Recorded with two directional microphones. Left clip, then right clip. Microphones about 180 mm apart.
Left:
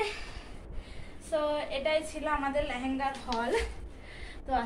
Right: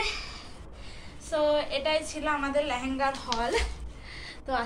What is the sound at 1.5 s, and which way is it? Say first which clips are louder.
Speech: right 3 dB; 30° left (ahead or behind).